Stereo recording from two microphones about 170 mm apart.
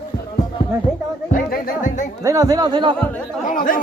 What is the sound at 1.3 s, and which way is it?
Speech, 50° left (ahead or behind).